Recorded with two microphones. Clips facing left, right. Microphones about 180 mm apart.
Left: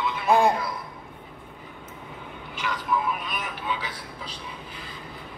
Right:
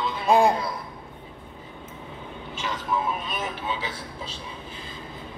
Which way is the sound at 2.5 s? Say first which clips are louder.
Left 1 dB; 25° right (ahead or behind).